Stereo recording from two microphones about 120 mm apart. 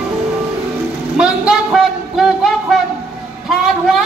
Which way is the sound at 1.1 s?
10° right (ahead or behind).